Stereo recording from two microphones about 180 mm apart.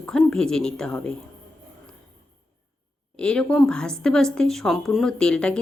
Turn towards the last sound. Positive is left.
turn(degrees=5)  # may be behind; listen again after turning